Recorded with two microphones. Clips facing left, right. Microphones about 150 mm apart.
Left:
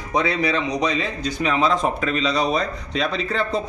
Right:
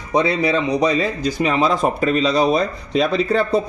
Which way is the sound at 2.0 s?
40° right (ahead or behind).